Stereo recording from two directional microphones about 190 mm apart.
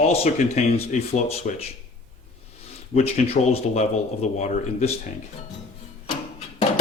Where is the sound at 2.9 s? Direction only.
35° left (ahead or behind).